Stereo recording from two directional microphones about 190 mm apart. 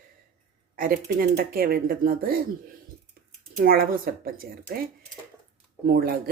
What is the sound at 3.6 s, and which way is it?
Speech, 50° right (ahead or behind).